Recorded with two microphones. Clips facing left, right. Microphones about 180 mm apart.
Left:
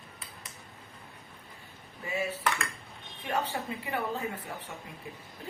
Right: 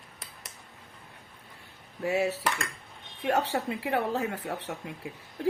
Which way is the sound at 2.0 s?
75° right (ahead or behind).